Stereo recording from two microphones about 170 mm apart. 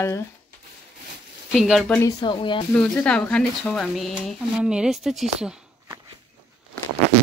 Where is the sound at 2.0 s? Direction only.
25° left (ahead or behind).